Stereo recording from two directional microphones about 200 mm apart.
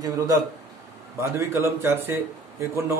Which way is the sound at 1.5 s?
10° right (ahead or behind).